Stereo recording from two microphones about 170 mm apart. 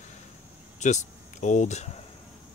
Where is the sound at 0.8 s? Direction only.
45° left (ahead or behind).